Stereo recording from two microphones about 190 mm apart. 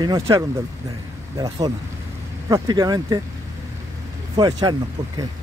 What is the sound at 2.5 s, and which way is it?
Speech, 20° right (ahead or behind).